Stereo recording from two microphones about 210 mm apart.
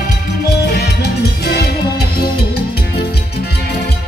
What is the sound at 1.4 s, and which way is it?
Music, 50° left (ahead or behind).